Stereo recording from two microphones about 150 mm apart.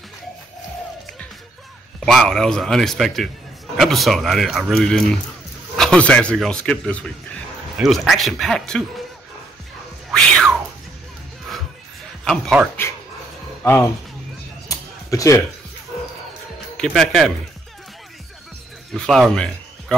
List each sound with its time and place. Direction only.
2.0 s a man's voice: centre (ahead or behind)
10.1 s music: centre (ahead or behind)
12.6 s speech: 10° right (ahead or behind)
13.6 s music: 15° left (ahead or behind)
14.7 s a sound: 20° left (ahead or behind)
16.7 s speech: 5° left (ahead or behind)
18.9 s a man's voice: centre (ahead or behind)